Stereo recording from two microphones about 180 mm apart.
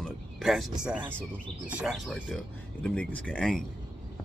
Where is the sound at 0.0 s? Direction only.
Centre (ahead or behind).